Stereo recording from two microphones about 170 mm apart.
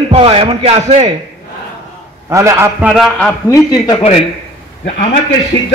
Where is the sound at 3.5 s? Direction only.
25° left (ahead or behind).